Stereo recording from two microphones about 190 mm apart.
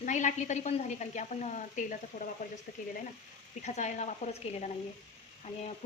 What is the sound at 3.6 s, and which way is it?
Speech, 40° left (ahead or behind).